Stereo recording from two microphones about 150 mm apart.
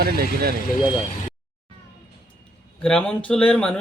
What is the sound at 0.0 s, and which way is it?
Speech, 90° right.